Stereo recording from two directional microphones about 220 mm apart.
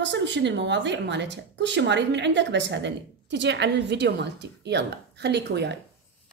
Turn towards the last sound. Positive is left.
turn(degrees=-50)  # may be behind; listen again after turning